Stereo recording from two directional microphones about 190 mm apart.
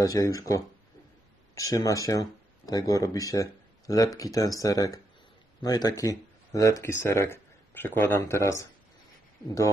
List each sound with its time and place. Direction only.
0.0 s speech: 20° left (ahead or behind)